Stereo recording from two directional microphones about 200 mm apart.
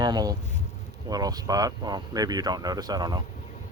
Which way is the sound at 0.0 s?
20° right (ahead or behind).